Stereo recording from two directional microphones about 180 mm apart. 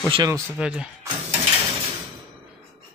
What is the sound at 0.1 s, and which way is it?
Speech, 20° right (ahead or behind).